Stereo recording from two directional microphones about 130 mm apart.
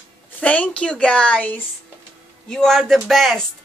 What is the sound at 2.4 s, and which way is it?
Speech, 5° left (ahead or behind).